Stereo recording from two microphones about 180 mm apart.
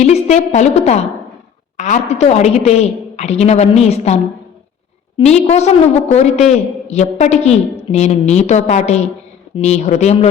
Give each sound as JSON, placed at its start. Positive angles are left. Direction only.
{"t": 0.0, "sound": "a woman's voice", "side_deg": 35}